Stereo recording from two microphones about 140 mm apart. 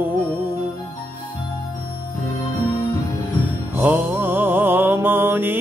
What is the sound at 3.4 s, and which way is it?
Music, 10° right (ahead or behind).